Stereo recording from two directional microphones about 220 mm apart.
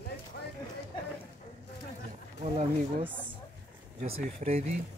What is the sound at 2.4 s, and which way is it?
Speech, 25° right (ahead or behind).